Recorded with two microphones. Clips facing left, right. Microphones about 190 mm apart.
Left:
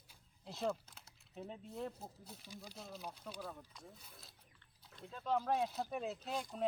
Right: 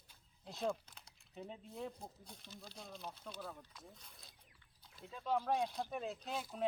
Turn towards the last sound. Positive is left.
turn(degrees=-5)  # may be behind; listen again after turning